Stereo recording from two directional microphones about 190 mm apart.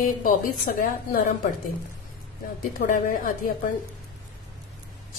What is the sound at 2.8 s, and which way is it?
Speech, 45° left (ahead or behind).